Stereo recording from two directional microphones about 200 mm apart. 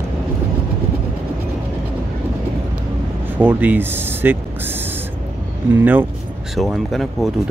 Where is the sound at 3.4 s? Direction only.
10° right (ahead or behind).